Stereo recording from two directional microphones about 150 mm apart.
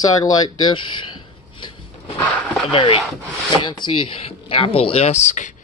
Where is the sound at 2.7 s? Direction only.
35° left (ahead or behind); by 5.5 s 55° left (ahead or behind).